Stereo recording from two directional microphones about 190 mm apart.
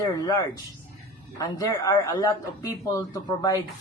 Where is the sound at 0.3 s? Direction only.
20° left (ahead or behind).